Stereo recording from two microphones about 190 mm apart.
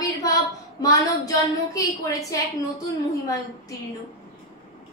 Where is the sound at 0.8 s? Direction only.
20° left (ahead or behind).